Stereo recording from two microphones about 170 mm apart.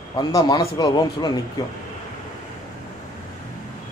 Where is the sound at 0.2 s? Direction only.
20° left (ahead or behind).